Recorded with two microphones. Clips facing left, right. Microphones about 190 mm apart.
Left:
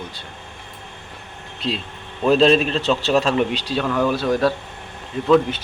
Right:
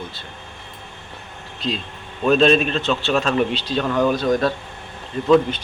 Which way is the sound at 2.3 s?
30° left (ahead or behind).